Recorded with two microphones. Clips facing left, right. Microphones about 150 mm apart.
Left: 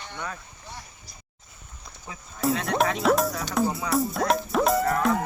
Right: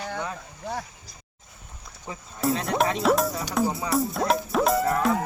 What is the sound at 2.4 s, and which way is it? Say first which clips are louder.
Speech: even; centre (ahead or behind).